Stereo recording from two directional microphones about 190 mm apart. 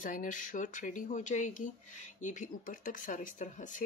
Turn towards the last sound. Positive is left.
turn(degrees=40)  # may be behind; listen again after turning